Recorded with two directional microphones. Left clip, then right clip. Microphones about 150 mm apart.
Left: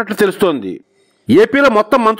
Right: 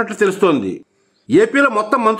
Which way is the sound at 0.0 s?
50° left (ahead or behind).